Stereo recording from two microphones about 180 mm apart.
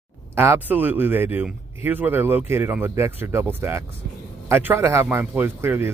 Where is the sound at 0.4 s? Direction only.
10° right (ahead or behind).